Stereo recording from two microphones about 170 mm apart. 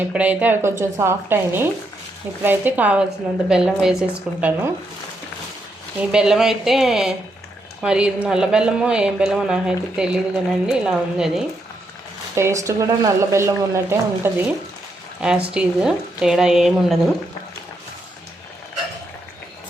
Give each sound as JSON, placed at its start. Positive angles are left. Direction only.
{"t": 0.0, "sound": "a woman's voice", "side_deg": -10}
{"t": 6.0, "sound": "a woman's voice", "side_deg": -5}
{"t": 12.3, "sound": "a woman's voice", "side_deg": -15}